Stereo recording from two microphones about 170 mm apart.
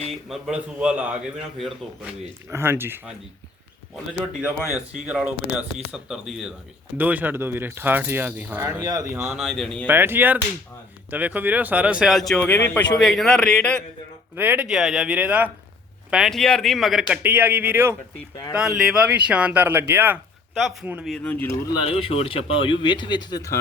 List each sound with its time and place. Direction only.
0.0 s a man's voice: centre (ahead or behind)
2.5 s speech: 15° right (ahead or behind)
4.1 s speech: 20° left (ahead or behind)
5.0 s a man's voice: 10° right (ahead or behind)
8.8 s speech: 25° right (ahead or behind)
9.1 s speech: 10° right (ahead or behind)
9.4 s a man's voice: centre (ahead or behind)
9.8 s a man's voice: 10° right (ahead or behind); by 13.8 s 5° left (ahead or behind)
14.3 s a man's voice: 10° right (ahead or behind)
20.5 s speech: centre (ahead or behind)
20.8 s speech: 10° right (ahead or behind)
21.1 s speech: 10° left (ahead or behind)
21.7 s speech: 35° left (ahead or behind)